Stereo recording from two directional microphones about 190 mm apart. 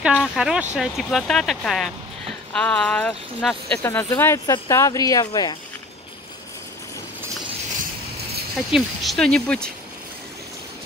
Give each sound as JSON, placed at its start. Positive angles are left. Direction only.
{"t": 0.0, "sound": "speech", "side_deg": -5}
{"t": 8.5, "sound": "speech", "side_deg": 0}